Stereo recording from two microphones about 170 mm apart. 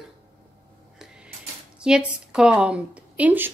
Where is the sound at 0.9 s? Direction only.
5° right (ahead or behind).